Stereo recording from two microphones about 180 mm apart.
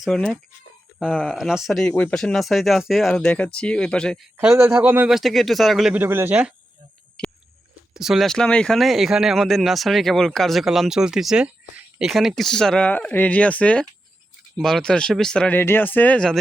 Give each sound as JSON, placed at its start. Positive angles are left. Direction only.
{"t": 0.0, "sound": "speech", "side_deg": 5}
{"t": 4.4, "sound": "a man's voice", "side_deg": -10}
{"t": 7.9, "sound": "speech", "side_deg": 0}